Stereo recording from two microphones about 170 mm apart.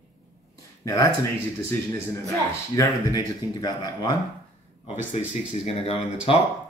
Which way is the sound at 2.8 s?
20° left (ahead or behind).